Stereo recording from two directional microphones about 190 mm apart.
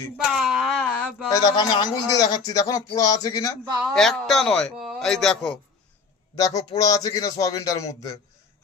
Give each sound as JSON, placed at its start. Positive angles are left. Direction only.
{"t": 0.3, "sound": "a sound", "side_deg": 0}
{"t": 1.3, "sound": "speech", "side_deg": 20}
{"t": 3.8, "sound": "speech", "side_deg": 5}
{"t": 6.3, "sound": "speech", "side_deg": 20}